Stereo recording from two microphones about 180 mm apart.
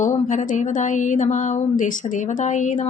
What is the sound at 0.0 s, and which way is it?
Speech, 45° left (ahead or behind).